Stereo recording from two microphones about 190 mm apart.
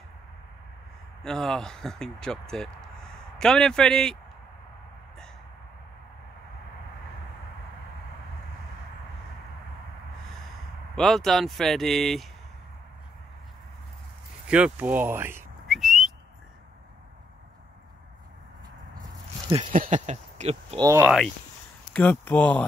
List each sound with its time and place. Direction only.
1.2 s speech: 5° left (ahead or behind)
11.0 s speech: centre (ahead or behind)
14.5 s speech: 5° right (ahead or behind)
15.7 s whistling: centre (ahead or behind)
19.7 s speech: 40° right (ahead or behind)
20.7 s speech: 15° right (ahead or behind)
21.9 s speech: 10° left (ahead or behind)